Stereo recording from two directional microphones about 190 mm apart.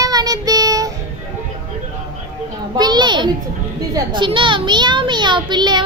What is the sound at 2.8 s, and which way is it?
A child's voice, 20° right (ahead or behind).